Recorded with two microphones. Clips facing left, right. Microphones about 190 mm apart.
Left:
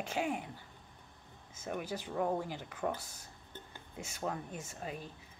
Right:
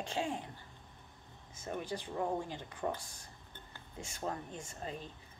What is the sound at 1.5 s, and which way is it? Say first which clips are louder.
Speech: left 1 dB; 5° left (ahead or behind).